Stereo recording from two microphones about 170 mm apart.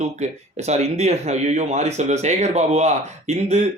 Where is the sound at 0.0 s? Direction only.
40° right (ahead or behind).